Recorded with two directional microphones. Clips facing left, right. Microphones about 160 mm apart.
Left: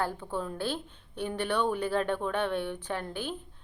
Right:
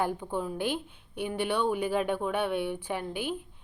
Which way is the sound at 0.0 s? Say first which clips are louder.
Right 2 dB; 15° right (ahead or behind).